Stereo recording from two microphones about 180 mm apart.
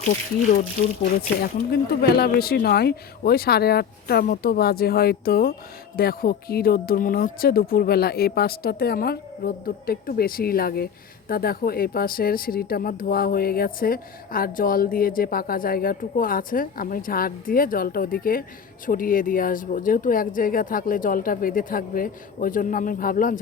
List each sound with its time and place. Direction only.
1.4 s speech: 55° left (ahead or behind)